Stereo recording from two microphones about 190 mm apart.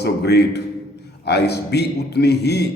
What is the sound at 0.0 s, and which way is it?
A man's voice, 60° left (ahead or behind).